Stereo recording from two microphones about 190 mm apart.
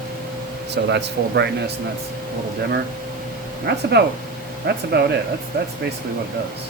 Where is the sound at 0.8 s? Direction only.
65° right (ahead or behind).